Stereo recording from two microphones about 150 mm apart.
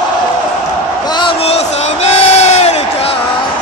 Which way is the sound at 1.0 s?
30° left (ahead or behind).